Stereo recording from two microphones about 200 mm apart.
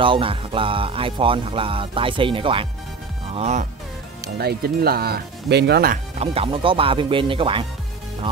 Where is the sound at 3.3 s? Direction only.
35° right (ahead or behind).